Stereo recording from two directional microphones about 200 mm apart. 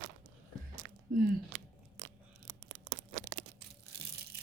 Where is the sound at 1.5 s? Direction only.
55° right (ahead or behind).